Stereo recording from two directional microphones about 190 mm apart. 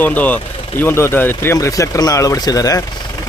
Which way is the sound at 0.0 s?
10° left (ahead or behind).